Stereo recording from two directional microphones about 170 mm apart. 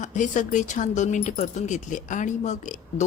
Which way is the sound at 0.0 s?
45° left (ahead or behind).